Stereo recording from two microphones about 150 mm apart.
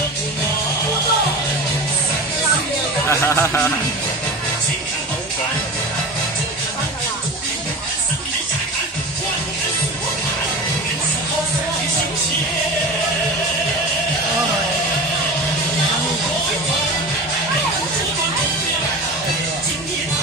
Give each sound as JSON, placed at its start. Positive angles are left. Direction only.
{"t": 3.1, "sound": "speech", "side_deg": 15}